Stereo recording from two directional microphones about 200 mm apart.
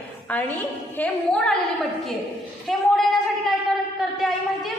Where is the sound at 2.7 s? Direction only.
Centre (ahead or behind).